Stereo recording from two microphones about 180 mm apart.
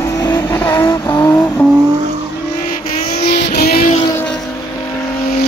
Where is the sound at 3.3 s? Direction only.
60° left (ahead or behind).